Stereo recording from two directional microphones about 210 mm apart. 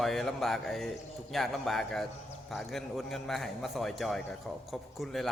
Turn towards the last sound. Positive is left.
turn(degrees=0)  # may be behind; listen again after turning